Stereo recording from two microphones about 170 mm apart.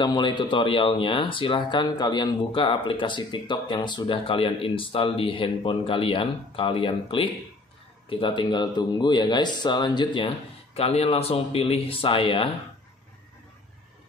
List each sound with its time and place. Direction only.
0.0 s speech: 25° left (ahead or behind)